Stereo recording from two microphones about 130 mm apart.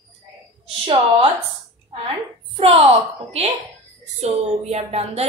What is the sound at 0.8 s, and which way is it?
Speech, 45° right (ahead or behind).